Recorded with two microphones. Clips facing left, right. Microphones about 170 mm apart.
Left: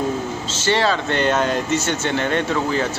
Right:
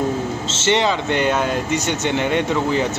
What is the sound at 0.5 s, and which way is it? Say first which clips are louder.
Speech: right 1 dB; 25° right (ahead or behind).